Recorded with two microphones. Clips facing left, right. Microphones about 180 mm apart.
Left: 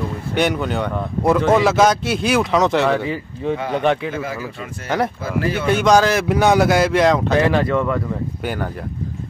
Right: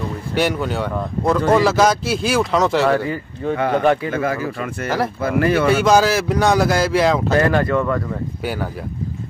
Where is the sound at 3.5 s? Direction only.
60° right (ahead or behind).